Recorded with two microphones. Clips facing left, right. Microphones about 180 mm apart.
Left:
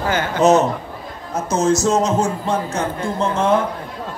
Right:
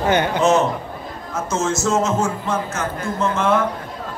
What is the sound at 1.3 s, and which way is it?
A man's voice, 35° left (ahead or behind).